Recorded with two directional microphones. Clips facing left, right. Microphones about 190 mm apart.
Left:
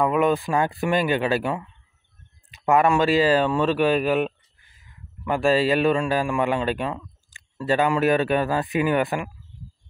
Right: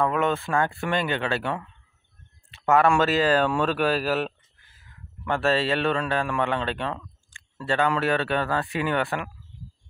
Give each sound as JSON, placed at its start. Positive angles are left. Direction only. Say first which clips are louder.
{"t": 0.0, "sound": "a man's voice", "louder": "left 4 dB", "side_deg": 15}
{"t": 2.5, "sound": "a sound", "louder": "left 1 dB", "side_deg": 15}
{"t": 2.9, "sound": "a man's voice", "louder": "left 2 dB", "side_deg": 10}
{"t": 5.2, "sound": "a man's voice", "louder": "left 4 dB", "side_deg": 10}